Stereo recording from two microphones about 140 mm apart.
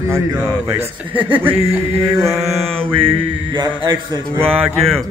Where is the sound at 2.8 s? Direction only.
40° right (ahead or behind).